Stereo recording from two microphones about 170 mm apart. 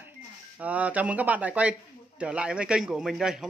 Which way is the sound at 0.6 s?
10° right (ahead or behind).